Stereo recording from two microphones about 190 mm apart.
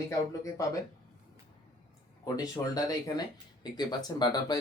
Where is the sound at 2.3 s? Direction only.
20° left (ahead or behind).